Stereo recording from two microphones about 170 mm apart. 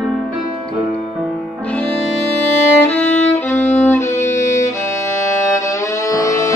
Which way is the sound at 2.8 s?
10° left (ahead or behind).